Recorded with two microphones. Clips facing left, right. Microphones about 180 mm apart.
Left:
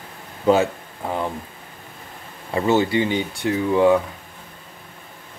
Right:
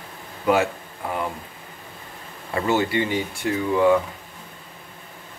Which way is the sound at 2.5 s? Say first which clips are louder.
Left 3 dB; 20° left (ahead or behind).